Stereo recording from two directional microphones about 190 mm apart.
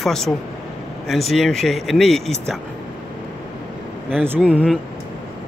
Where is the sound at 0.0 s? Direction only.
Centre (ahead or behind).